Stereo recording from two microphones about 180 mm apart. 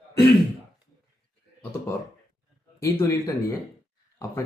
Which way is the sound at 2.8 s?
15° left (ahead or behind).